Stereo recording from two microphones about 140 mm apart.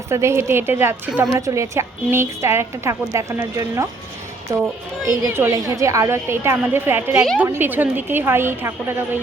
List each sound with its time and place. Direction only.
0.1 s a woman's voice: 20° right (ahead or behind)